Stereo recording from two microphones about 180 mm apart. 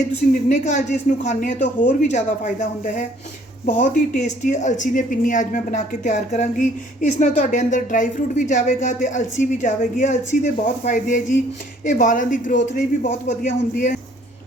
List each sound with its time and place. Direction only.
0.4 s speech: 40° left (ahead or behind)